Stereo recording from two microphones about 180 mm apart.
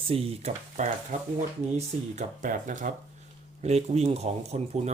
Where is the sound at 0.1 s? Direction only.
35° right (ahead or behind).